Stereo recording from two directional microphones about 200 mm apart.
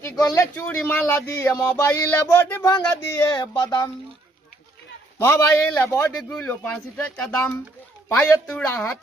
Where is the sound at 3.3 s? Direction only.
20° left (ahead or behind).